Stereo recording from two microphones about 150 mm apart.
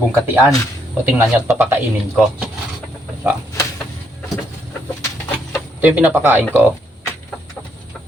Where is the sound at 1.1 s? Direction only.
15° right (ahead or behind).